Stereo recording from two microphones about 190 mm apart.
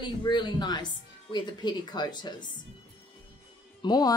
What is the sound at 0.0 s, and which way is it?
Speech, 25° left (ahead or behind).